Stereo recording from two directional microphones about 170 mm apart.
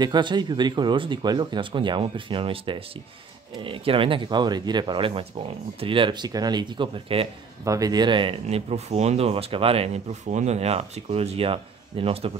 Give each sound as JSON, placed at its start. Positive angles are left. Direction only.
{"t": 0.0, "sound": "speech", "side_deg": -25}
{"t": 7.6, "sound": "speech", "side_deg": -20}